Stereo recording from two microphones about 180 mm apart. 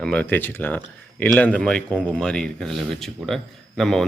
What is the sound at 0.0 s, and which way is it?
Speech, 5° left (ahead or behind).